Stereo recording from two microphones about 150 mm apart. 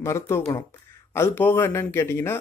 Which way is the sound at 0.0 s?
20° left (ahead or behind).